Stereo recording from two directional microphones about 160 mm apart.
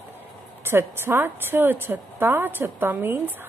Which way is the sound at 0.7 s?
15° right (ahead or behind).